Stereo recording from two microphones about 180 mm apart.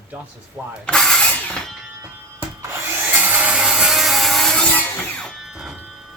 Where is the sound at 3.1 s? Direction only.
10° right (ahead or behind).